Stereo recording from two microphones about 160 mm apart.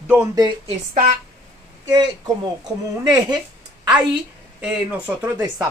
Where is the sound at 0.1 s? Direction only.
20° right (ahead or behind).